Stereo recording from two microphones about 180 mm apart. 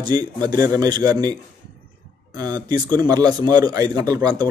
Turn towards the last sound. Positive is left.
turn(degrees=-20)  # may be behind; listen again after turning